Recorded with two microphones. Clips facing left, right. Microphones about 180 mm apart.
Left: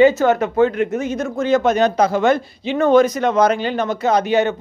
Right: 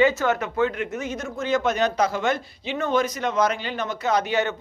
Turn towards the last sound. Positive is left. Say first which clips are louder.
# left 7 dB
turn(degrees=25)  # may be behind; listen again after turning